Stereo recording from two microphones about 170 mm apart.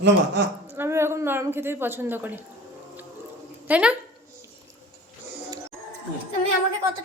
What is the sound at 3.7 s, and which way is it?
Speech, 5° right (ahead or behind).